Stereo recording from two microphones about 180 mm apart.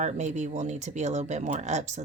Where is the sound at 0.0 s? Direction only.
40° right (ahead or behind).